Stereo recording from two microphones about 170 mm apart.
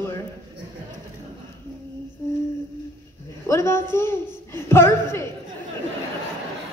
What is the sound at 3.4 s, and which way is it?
A woman's voice, 15° left (ahead or behind).